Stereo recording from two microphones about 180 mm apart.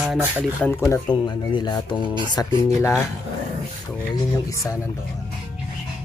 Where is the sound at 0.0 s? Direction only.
5° right (ahead or behind).